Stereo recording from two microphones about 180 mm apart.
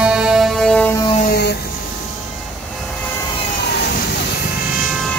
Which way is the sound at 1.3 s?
65° left (ahead or behind).